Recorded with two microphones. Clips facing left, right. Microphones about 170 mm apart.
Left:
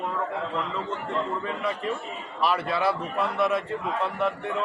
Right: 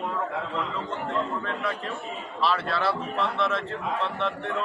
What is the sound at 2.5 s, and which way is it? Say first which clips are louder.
A man's voice: left 2 dB; 15° left (ahead or behind).